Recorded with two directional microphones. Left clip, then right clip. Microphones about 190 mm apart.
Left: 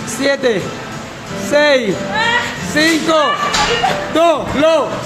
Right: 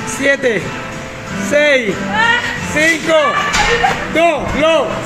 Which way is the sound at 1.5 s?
20° left (ahead or behind).